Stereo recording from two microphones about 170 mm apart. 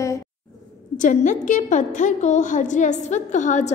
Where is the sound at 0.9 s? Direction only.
50° left (ahead or behind).